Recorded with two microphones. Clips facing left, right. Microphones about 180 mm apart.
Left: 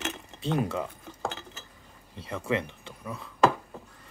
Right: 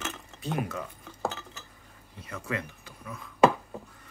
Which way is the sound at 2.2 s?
25° left (ahead or behind).